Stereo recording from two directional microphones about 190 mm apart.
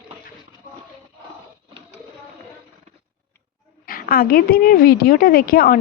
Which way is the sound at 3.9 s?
50° left (ahead or behind).